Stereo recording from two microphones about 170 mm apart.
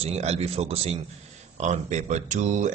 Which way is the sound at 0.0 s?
40° right (ahead or behind).